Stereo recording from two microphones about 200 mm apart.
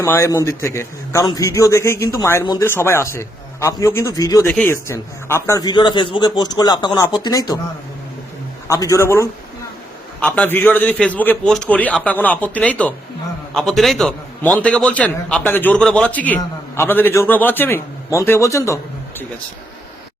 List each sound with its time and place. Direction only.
0.0 s a man's voice: 15° left (ahead or behind)
8.6 s a man's voice: 15° left (ahead or behind)